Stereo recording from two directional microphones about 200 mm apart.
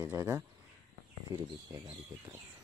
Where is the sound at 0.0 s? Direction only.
15° right (ahead or behind).